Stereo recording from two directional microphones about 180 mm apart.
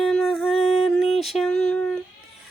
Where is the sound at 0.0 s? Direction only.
Centre (ahead or behind).